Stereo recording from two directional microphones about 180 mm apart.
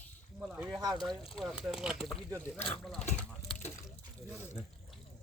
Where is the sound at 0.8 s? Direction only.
20° right (ahead or behind).